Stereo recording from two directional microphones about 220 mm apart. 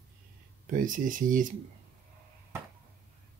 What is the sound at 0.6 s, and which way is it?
Speech, 35° right (ahead or behind).